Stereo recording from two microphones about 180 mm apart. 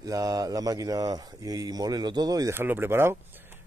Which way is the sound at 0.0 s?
20° right (ahead or behind).